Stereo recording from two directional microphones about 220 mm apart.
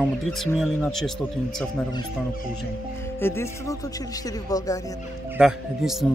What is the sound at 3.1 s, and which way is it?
Music, 10° left (ahead or behind).